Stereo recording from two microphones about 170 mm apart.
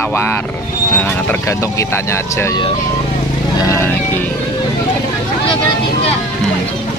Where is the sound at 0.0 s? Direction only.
10° left (ahead or behind).